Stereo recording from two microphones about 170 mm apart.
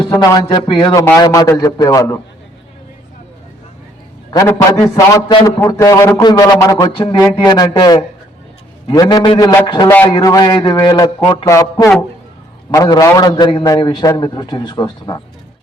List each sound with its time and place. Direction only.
0.2 s a man's voice: 25° left (ahead or behind)
4.3 s a man's voice: 20° left (ahead or behind)